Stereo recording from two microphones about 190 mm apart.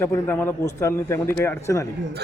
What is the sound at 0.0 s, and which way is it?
Speech, 10° left (ahead or behind).